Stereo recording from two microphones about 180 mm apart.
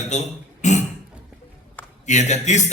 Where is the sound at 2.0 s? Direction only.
40° left (ahead or behind).